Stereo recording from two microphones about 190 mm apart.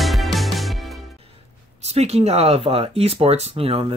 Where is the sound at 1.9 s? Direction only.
35° right (ahead or behind).